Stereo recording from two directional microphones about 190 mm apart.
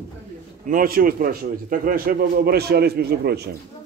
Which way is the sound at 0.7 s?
50° right (ahead or behind).